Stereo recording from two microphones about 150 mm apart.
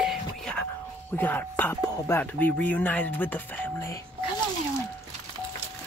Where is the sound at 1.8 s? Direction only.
25° left (ahead or behind).